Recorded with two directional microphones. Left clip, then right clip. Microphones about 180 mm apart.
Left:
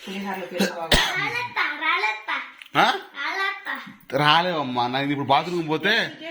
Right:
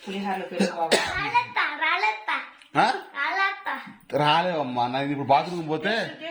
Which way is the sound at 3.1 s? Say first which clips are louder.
Right 1 dB; 30° right (ahead or behind).